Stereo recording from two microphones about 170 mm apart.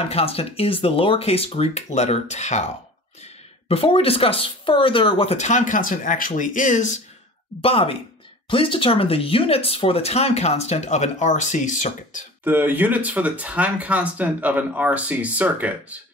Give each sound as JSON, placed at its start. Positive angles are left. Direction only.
{"t": 0.1, "sound": "speech", "side_deg": 35}
{"t": 3.6, "sound": "speech", "side_deg": 35}
{"t": 7.6, "sound": "speech", "side_deg": 35}
{"t": 12.4, "sound": "speech", "side_deg": -10}